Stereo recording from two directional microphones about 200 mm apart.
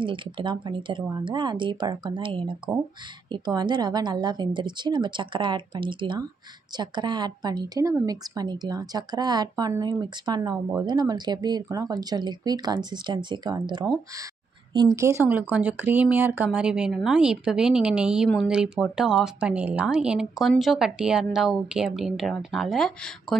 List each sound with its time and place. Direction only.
0.0 s a woman's voice: 25° right (ahead or behind); by 23.1 s centre (ahead or behind)